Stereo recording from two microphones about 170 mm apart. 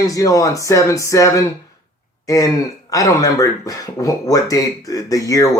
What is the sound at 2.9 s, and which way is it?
Speech, 20° left (ahead or behind).